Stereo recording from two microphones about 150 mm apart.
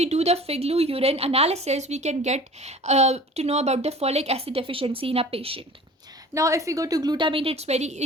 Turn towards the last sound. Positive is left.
turn(degrees=-50)  # may be behind; listen again after turning